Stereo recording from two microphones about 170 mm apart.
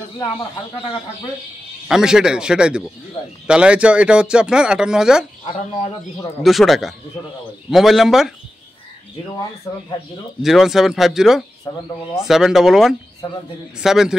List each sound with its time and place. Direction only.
0.2 s speech: 25° left (ahead or behind)
1.9 s speech: 5° right (ahead or behind)
6.4 s speech: centre (ahead or behind)
9.7 s speech: 20° left (ahead or behind)
10.4 s speech: centre (ahead or behind)